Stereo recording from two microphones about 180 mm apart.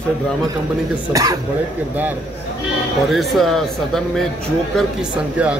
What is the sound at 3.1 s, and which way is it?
A woman's voice, centre (ahead or behind).